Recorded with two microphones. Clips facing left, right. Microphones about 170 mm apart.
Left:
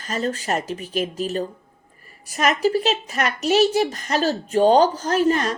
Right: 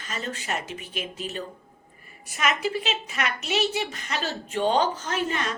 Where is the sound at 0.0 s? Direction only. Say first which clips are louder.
Left 9 dB; 40° left (ahead or behind).